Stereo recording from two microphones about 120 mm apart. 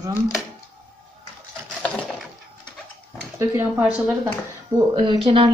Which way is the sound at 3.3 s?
20° right (ahead or behind).